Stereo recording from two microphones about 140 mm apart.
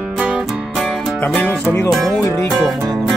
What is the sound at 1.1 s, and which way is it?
Speech, 10° left (ahead or behind).